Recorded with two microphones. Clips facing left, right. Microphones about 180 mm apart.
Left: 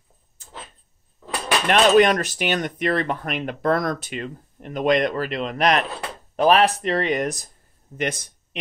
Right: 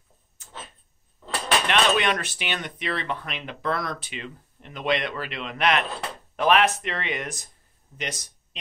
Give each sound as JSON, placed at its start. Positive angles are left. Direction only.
{"t": 1.7, "sound": "speech", "side_deg": 40}